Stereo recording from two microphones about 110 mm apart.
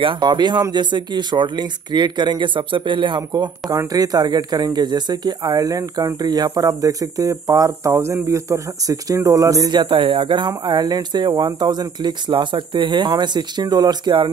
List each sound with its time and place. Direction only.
0.0 s speech: 50° right (ahead or behind); by 9.7 s 30° right (ahead or behind)
9.7 s speech: 50° right (ahead or behind)